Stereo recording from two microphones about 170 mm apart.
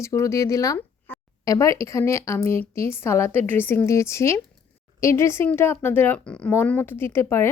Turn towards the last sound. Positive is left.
turn(degrees=15)  # may be behind; listen again after turning